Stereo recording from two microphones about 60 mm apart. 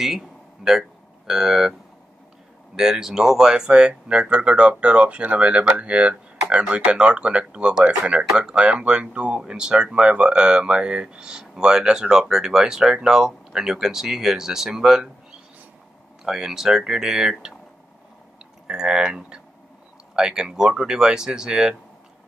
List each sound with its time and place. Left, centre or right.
0.7 s speech: centre
16.3 s speech: centre
18.7 s speech: centre